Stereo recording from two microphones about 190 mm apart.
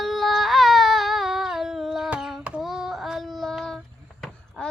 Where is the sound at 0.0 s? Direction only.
Centre (ahead or behind).